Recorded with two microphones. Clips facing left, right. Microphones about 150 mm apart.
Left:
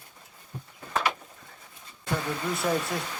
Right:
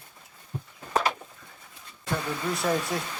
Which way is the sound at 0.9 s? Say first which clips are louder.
Right 2 dB; 30° right (ahead or behind).